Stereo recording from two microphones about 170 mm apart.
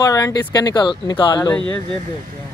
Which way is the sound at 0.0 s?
20° left (ahead or behind).